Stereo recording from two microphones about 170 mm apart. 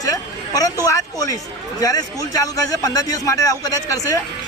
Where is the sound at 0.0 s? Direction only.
20° left (ahead or behind).